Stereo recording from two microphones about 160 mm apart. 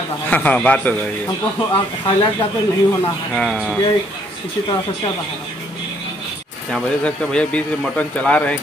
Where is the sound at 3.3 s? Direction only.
5° left (ahead or behind).